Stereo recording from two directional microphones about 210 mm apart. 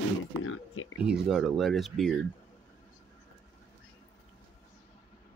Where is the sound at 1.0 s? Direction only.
Centre (ahead or behind).